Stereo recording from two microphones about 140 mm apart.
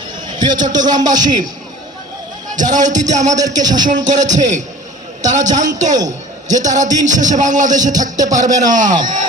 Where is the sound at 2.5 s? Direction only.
65° right (ahead or behind).